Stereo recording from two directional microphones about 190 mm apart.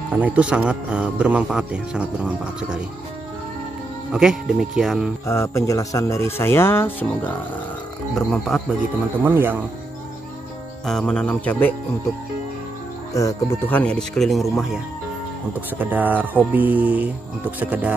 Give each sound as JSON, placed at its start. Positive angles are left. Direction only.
{"t": 0.1, "sound": "speech", "side_deg": -10}
{"t": 4.1, "sound": "speech", "side_deg": -5}
{"t": 5.2, "sound": "speech", "side_deg": 15}
{"t": 9.2, "sound": "speech", "side_deg": -10}
{"t": 10.9, "sound": "speech", "side_deg": 5}
{"t": 13.1, "sound": "speech", "side_deg": 15}
{"t": 15.8, "sound": "speech", "side_deg": -10}